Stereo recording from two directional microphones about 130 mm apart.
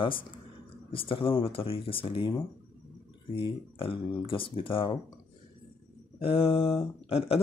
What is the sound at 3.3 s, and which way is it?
Speech, 45° left (ahead or behind).